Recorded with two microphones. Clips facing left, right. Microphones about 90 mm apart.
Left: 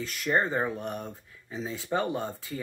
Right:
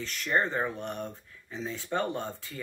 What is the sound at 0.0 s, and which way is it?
Speech, 10° left (ahead or behind).